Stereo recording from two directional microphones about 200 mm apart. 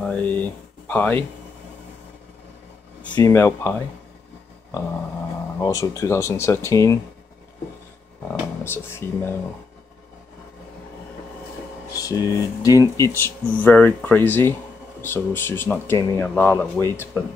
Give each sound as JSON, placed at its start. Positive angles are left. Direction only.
{"t": 0.0, "sound": "speech", "side_deg": 5}
{"t": 3.2, "sound": "speech", "side_deg": 15}
{"t": 5.6, "sound": "speech", "side_deg": 15}
{"t": 8.6, "sound": "speech", "side_deg": 10}
{"t": 11.9, "sound": "music", "side_deg": 15}
{"t": 12.4, "sound": "speech", "side_deg": 15}